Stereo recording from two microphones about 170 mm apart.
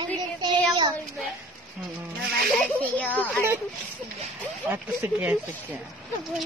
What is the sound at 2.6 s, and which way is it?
Speech, 10° left (ahead or behind).